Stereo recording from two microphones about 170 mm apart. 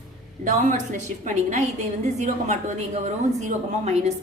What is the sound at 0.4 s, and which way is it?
A woman's voice, 50° right (ahead or behind).